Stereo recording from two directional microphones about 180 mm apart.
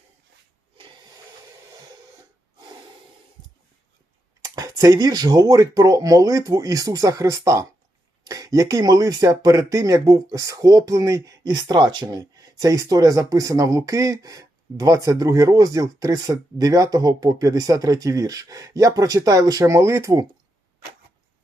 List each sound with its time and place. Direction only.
4.4 s speech: 20° right (ahead or behind)